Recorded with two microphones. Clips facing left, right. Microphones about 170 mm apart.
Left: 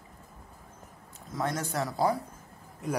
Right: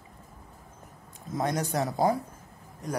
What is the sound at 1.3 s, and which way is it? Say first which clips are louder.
Speech: right 3 dB; 20° right (ahead or behind).